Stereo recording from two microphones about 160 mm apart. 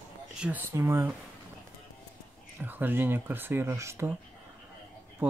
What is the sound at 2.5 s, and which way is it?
Speech, 10° right (ahead or behind).